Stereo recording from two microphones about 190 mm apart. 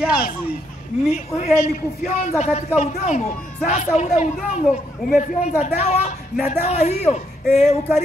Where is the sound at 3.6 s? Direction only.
35° left (ahead or behind).